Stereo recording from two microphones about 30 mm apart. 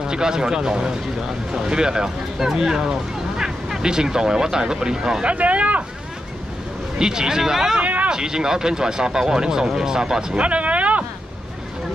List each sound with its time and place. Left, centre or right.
0.0 s speech: right
5.2 s speech: right
7.0 s speech: right
7.8 s a sound: right
8.1 s speech: right
10.3 s a sound: right